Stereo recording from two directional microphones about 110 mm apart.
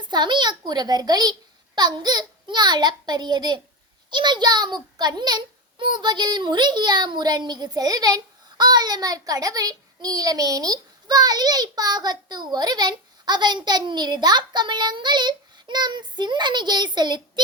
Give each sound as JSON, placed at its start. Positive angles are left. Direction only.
{"t": 0.1, "sound": "speech", "side_deg": -40}